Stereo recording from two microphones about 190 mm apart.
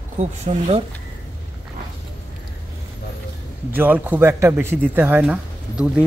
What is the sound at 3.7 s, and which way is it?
A man's voice, 10° right (ahead or behind).